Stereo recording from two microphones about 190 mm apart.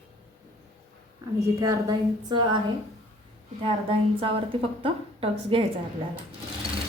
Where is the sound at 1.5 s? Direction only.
15° right (ahead or behind).